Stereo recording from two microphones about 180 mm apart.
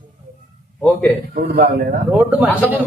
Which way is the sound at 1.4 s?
50° right (ahead or behind).